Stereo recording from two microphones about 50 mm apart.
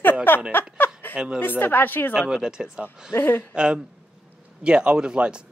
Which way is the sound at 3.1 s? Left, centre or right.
Left.